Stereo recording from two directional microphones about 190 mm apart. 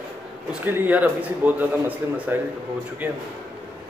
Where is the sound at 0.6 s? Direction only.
10° right (ahead or behind).